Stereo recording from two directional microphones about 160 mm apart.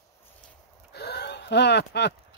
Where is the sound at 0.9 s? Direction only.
90° left.